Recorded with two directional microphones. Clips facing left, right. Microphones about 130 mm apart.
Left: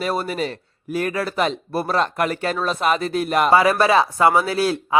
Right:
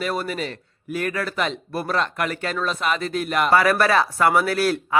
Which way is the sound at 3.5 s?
20° left (ahead or behind).